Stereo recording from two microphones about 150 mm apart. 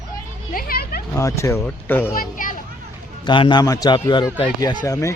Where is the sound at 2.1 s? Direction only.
65° left (ahead or behind).